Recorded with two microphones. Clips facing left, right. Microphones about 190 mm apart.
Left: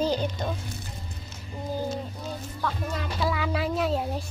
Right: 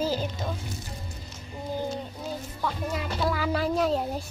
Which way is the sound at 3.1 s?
Centre (ahead or behind).